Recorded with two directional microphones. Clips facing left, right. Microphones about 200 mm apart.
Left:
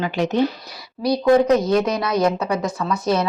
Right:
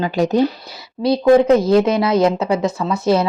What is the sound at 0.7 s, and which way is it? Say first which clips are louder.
Speech: right 3 dB; 25° right (ahead or behind).